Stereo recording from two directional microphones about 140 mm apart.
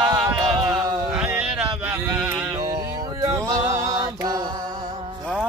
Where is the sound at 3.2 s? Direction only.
25° right (ahead or behind).